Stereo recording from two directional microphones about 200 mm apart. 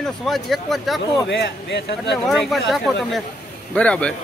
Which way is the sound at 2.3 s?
Centre (ahead or behind).